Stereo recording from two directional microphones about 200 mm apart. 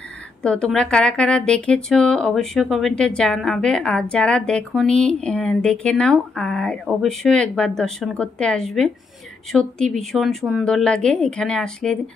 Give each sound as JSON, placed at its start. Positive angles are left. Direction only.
{"t": 0.4, "sound": "speech", "side_deg": 5}